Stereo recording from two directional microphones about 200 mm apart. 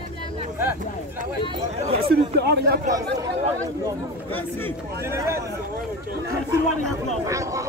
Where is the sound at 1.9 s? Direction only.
55° right (ahead or behind).